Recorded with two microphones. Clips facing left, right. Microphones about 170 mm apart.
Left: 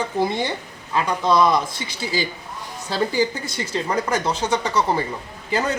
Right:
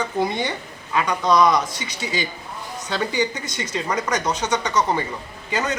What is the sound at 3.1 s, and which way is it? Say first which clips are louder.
Speech: left 2 dB; 5° left (ahead or behind).